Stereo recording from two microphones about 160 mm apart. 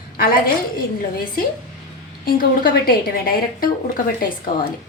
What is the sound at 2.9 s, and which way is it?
Speech, 65° left (ahead or behind).